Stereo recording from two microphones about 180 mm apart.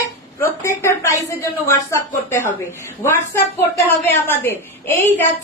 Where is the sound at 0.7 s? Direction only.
15° left (ahead or behind).